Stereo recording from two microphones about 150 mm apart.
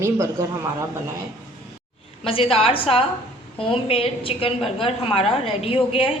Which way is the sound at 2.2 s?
40° left (ahead or behind).